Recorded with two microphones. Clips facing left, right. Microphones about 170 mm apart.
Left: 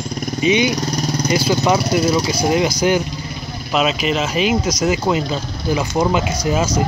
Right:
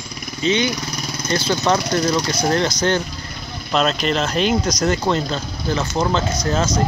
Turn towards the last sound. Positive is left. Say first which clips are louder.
# left 2 dB
turn(degrees=10)  # may be behind; listen again after turning